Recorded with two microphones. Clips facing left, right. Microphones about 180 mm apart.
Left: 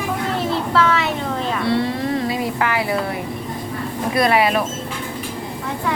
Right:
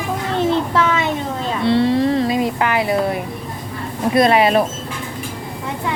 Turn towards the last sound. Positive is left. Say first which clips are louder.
# right 3 dB
turn(degrees=-25)  # may be behind; listen again after turning